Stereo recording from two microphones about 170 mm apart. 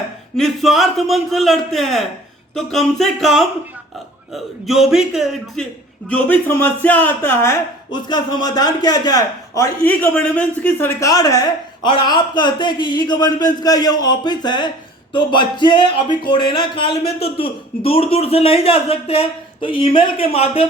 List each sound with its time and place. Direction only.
0.3 s a man's voice: centre (ahead or behind)
4.6 s a man's voice: centre (ahead or behind); by 7.9 s 15° left (ahead or behind)
8.0 s speech: 25° left (ahead or behind)
9.8 s speech: 10° left (ahead or behind); by 20.7 s 35° left (ahead or behind)